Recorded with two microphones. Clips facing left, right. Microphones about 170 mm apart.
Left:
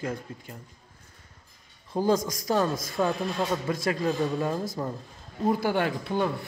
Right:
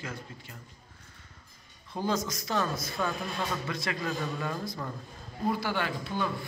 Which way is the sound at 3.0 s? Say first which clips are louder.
Left 7 dB; 20° left (ahead or behind).